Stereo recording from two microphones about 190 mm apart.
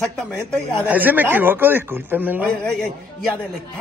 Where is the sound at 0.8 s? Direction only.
10° right (ahead or behind).